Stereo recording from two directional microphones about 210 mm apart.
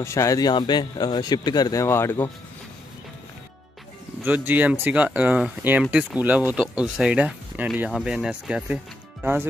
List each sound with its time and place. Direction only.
0.0 s speech: 15° left (ahead or behind)
4.2 s speech: 10° right (ahead or behind)